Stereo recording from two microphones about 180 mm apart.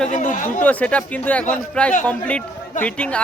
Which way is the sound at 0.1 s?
45° left (ahead or behind).